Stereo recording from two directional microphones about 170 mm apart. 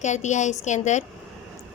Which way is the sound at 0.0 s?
45° left (ahead or behind).